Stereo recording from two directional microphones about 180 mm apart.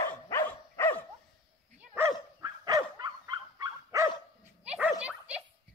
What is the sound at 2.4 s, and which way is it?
Dog, 20° right (ahead or behind).